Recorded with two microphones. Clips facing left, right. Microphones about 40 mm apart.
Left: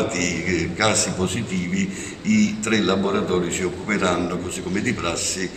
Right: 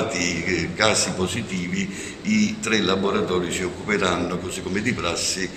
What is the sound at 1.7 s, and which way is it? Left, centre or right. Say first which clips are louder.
Speech: left 2 dB; centre.